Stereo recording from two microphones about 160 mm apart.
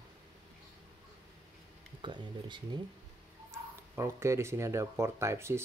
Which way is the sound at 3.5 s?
15° right (ahead or behind).